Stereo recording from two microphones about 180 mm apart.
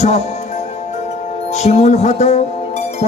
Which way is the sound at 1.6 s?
40° left (ahead or behind).